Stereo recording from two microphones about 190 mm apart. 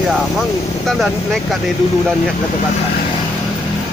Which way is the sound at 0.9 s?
Centre (ahead or behind).